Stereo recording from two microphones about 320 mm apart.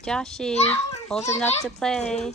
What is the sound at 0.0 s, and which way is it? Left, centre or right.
Speech, centre.